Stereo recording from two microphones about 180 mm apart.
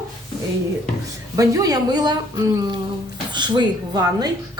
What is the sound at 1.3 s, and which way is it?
A woman's voice, 20° right (ahead or behind).